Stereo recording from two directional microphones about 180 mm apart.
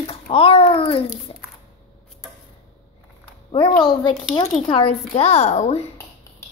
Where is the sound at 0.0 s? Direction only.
35° left (ahead or behind).